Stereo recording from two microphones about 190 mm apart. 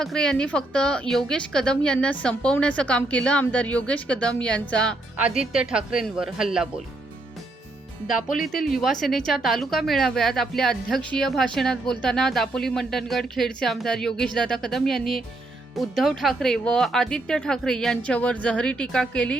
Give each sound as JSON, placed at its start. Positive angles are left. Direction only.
{"t": 0.0, "sound": "a woman's voice", "side_deg": 5}
{"t": 8.0, "sound": "speech", "side_deg": 45}
{"t": 8.4, "sound": "a woman's voice", "side_deg": 0}